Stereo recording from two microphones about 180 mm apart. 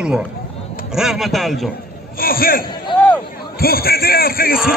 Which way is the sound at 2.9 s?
25° left (ahead or behind).